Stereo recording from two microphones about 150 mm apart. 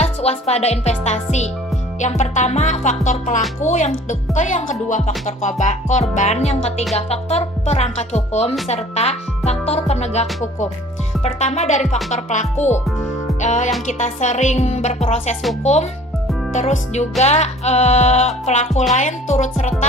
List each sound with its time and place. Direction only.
0.0 s speech: 45° left (ahead or behind)